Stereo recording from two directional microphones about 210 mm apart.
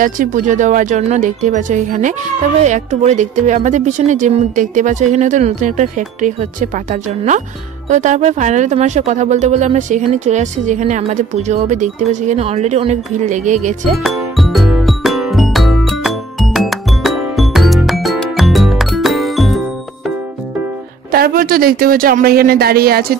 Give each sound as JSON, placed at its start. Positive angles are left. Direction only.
{"t": 0.0, "sound": "speech", "side_deg": -40}
{"t": 13.9, "sound": "music", "side_deg": 0}
{"t": 21.1, "sound": "speech", "side_deg": -45}